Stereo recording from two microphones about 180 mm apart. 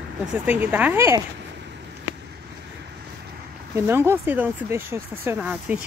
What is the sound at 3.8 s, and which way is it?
Speech, 15° right (ahead or behind).